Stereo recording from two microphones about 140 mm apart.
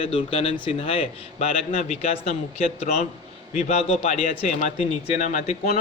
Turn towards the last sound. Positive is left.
turn(degrees=65)  # may be behind; listen again after turning